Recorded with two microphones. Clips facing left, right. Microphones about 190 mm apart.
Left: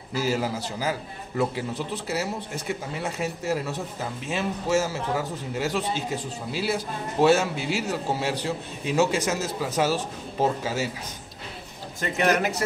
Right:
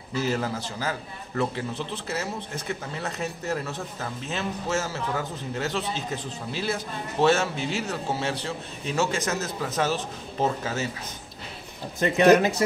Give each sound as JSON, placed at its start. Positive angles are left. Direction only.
{"t": 0.2, "sound": "speech", "side_deg": 10}
{"t": 12.0, "sound": "speech", "side_deg": -20}